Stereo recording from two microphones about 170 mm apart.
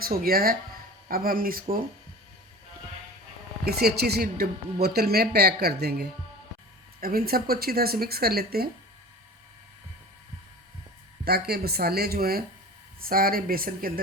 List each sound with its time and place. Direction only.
0.0 s speech: 60° right (ahead or behind)
3.6 s speech: 65° right (ahead or behind)
11.3 s speech: 65° right (ahead or behind)